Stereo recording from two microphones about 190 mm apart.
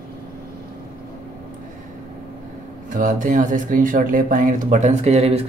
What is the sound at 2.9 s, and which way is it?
Speech, 45° right (ahead or behind).